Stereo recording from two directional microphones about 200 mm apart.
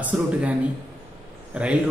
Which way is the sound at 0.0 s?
5° right (ahead or behind).